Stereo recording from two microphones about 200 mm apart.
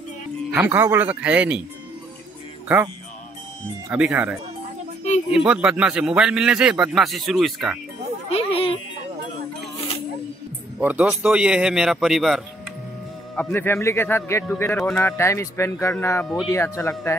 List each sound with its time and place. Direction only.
0.6 s speech: 10° right (ahead or behind)
3.9 s a man's voice: 5° right (ahead or behind)
8.3 s a sound: 30° left (ahead or behind)
10.8 s a man's voice: 10° right (ahead or behind)
13.4 s a man's voice: 10° left (ahead or behind)